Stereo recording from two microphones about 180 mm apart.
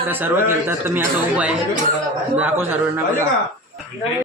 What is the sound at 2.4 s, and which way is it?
Speech, 10° right (ahead or behind).